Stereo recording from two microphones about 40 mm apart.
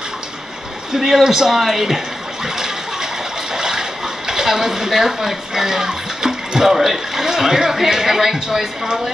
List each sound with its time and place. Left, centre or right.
0.9 s speech: centre
2.4 s a sound: centre
3.5 s water: centre
4.3 s speech: centre